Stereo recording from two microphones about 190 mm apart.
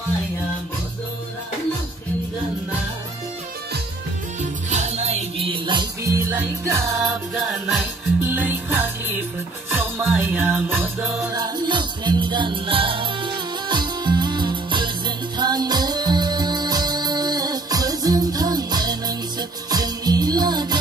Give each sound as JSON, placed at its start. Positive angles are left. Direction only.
{"t": 4.4, "sound": "music", "side_deg": -40}
{"t": 7.3, "sound": "music", "side_deg": 0}
{"t": 10.1, "sound": "music", "side_deg": -10}
{"t": 11.2, "sound": "music", "side_deg": -20}